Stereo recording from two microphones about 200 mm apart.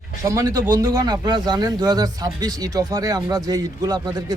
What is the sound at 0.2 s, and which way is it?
Speech, 15° right (ahead or behind).